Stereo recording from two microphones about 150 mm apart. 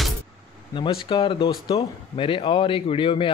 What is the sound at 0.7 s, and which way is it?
Speech, 35° left (ahead or behind).